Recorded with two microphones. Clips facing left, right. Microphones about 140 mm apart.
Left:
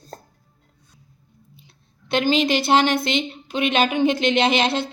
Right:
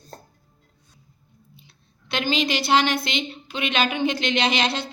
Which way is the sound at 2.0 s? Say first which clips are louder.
Left 5 dB; 45° left (ahead or behind).